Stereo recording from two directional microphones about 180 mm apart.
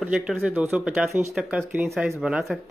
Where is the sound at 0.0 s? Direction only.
5° right (ahead or behind).